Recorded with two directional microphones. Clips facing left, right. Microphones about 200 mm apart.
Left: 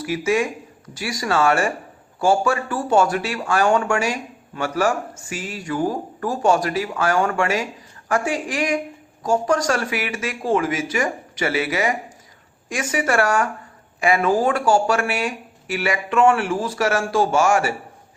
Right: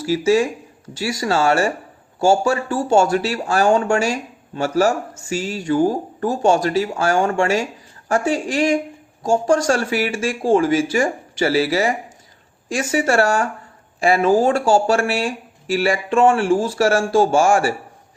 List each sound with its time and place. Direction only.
0.0 s speech: 30° right (ahead or behind)